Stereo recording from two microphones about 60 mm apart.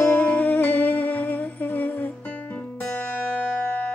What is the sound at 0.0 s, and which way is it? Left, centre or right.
Music, left.